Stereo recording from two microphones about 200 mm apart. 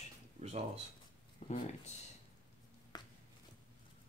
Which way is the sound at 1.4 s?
35° left (ahead or behind).